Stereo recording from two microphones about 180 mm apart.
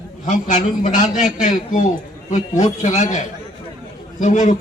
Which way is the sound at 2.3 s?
40° left (ahead or behind).